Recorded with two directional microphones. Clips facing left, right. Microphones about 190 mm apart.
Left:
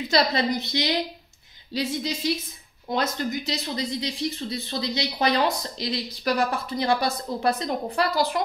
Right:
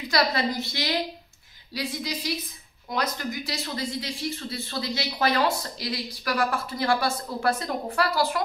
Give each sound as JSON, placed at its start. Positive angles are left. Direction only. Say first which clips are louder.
{"t": 0.1, "sound": "speech", "louder": "left 2 dB", "side_deg": 20}